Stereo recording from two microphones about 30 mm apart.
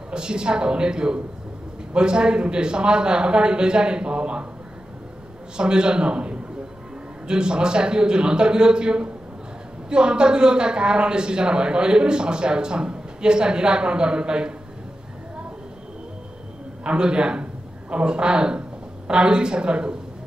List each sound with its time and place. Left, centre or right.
0.1 s a man's voice: right
5.6 s a woman's voice: right
16.8 s a woman's voice: right